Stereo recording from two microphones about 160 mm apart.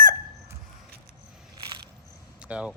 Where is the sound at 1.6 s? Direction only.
25° right (ahead or behind).